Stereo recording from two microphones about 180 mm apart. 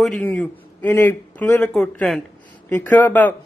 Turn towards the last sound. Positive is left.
turn(degrees=10)  # may be behind; listen again after turning